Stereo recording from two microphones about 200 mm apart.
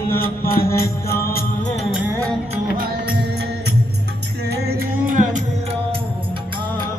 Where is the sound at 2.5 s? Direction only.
50° right (ahead or behind).